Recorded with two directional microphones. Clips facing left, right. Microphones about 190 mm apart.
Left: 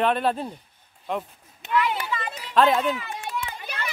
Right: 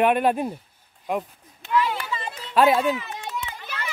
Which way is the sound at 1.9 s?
20° left (ahead or behind).